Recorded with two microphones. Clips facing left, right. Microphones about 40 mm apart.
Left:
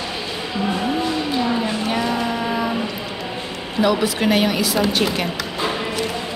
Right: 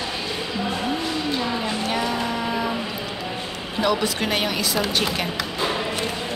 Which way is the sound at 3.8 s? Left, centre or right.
Centre.